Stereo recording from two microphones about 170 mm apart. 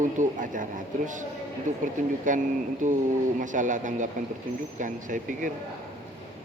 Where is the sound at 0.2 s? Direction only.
50° right (ahead or behind).